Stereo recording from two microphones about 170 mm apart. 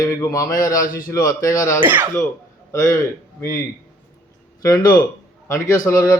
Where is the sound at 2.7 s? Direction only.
15° left (ahead or behind).